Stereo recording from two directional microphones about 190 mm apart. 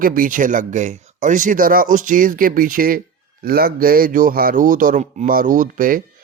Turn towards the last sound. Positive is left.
turn(degrees=-45)  # may be behind; listen again after turning